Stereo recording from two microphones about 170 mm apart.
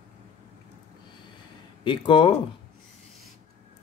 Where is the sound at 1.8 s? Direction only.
30° left (ahead or behind).